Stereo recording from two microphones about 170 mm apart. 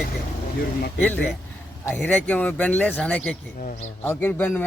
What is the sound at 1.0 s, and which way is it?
Speech, 10° left (ahead or behind).